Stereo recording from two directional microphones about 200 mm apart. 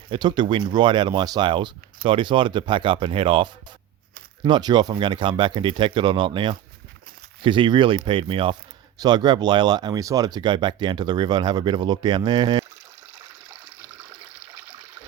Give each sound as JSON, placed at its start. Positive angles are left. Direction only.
{"t": 0.1, "sound": "speech", "side_deg": -20}